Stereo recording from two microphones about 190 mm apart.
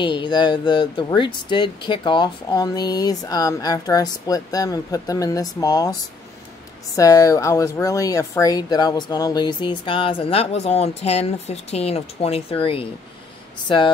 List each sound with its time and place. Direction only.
0.0 s speech: 25° left (ahead or behind)
7.0 s speech: 20° left (ahead or behind)
13.7 s speech: 25° left (ahead or behind)